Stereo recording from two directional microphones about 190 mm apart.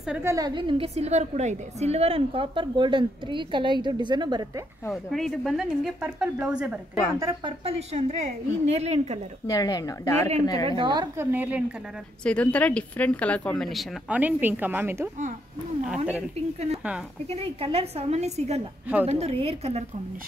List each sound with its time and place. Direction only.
0.0 s a woman's voice: 10° right (ahead or behind)
4.9 s a woman's voice: centre (ahead or behind)
7.2 s a woman's voice: 20° right (ahead or behind)
7.6 s a woman's voice: 35° right (ahead or behind)
9.5 s a woman's voice: 20° left (ahead or behind)
10.8 s a woman's voice: 20° right (ahead or behind)
11.3 s a woman's voice: 10° right (ahead or behind)
12.2 s a woman's voice: 5° left (ahead or behind); by 15.0 s 10° right (ahead or behind)
17.3 s a woman's voice: 30° right (ahead or behind)